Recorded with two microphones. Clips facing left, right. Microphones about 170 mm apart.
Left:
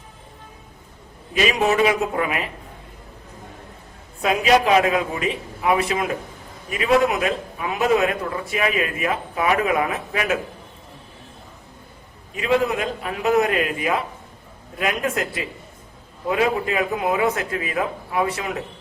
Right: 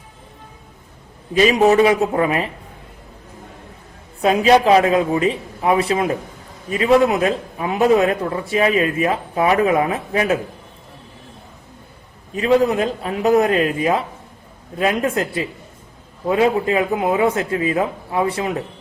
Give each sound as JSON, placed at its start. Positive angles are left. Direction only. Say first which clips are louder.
{"t": 1.3, "sound": "a man's voice", "louder": "right 6 dB", "side_deg": -35}
{"t": 4.2, "sound": "a man's voice", "louder": "right 4 dB", "side_deg": -30}
{"t": 12.4, "sound": "a man's voice", "louder": "right 5 dB", "side_deg": -35}